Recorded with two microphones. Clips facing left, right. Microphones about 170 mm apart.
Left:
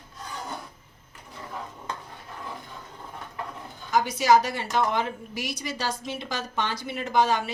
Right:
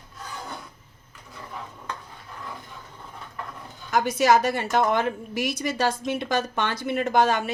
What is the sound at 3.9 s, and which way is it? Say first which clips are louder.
A woman's voice: right 1 dB; 55° right (ahead or behind).